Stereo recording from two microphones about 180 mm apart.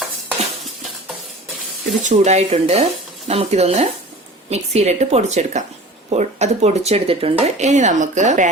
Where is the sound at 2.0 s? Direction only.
40° right (ahead or behind).